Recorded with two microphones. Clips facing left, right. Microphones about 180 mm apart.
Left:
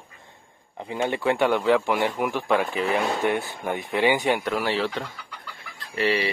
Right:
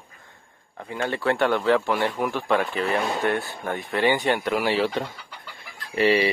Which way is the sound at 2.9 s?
15° left (ahead or behind).